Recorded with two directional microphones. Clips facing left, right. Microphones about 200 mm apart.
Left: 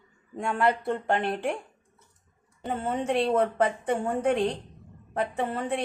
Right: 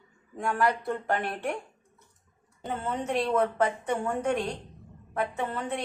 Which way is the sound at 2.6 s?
25° left (ahead or behind).